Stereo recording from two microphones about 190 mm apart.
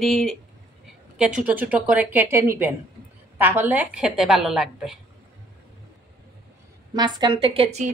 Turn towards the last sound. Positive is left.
turn(degrees=-35)  # may be behind; listen again after turning